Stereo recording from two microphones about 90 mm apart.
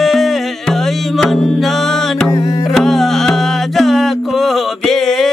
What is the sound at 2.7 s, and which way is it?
Music, centre (ahead or behind).